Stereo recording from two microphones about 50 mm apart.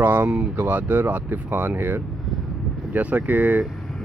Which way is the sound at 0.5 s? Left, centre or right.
Right.